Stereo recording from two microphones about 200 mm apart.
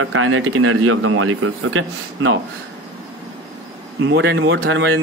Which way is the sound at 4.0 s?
65° right (ahead or behind).